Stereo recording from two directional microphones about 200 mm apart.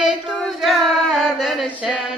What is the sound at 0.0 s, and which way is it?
Female singing, centre (ahead or behind).